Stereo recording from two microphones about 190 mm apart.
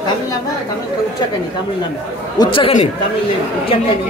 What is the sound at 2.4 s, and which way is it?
Speech, 25° left (ahead or behind).